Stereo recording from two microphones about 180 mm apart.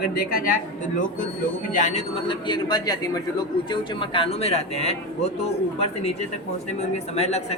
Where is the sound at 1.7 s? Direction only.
45° left (ahead or behind).